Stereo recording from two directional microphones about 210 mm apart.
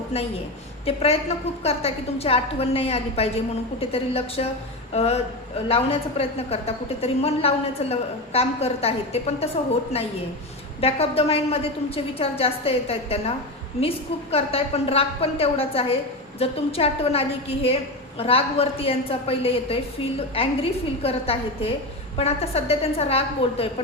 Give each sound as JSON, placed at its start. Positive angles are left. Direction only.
{"t": 0.9, "sound": "a woman's voice", "side_deg": 30}
{"t": 10.8, "sound": "a woman's voice", "side_deg": 30}